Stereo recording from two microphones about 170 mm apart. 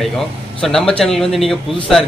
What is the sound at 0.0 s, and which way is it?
Speech, centre (ahead or behind).